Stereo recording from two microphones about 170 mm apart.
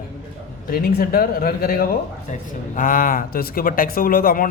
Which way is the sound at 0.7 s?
60° left (ahead or behind).